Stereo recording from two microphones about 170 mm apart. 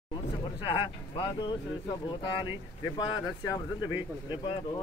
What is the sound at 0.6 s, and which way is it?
Speech, 30° left (ahead or behind).